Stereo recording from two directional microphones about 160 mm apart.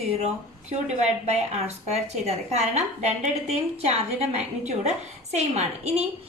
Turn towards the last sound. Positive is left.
turn(degrees=-40)  # may be behind; listen again after turning